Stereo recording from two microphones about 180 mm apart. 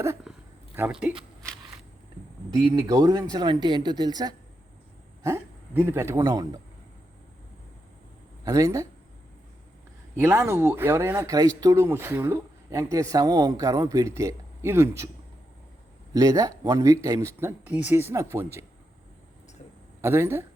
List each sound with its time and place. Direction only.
0.3 s a sound: 5° right (ahead or behind)
2.7 s speech: 20° right (ahead or behind)
8.4 s speech: 20° right (ahead or behind)
10.2 s speech: 10° right (ahead or behind)
16.1 s speech: 20° right (ahead or behind)
20.0 s speech: 15° right (ahead or behind)